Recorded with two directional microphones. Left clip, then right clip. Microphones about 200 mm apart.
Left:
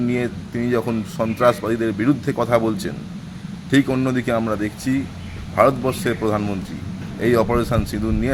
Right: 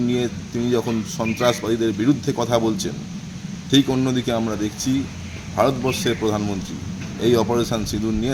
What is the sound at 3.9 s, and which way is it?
Speech, 5° left (ahead or behind).